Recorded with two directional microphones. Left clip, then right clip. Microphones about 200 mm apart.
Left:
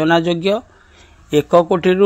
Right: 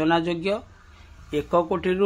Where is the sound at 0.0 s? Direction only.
35° left (ahead or behind).